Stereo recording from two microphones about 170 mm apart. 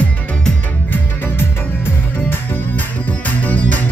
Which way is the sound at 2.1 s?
10° left (ahead or behind).